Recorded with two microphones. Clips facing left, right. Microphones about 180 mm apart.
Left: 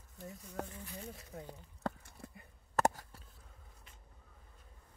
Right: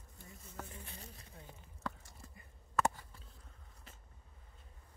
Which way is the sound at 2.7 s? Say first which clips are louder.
Left 2 dB; 40° left (ahead or behind).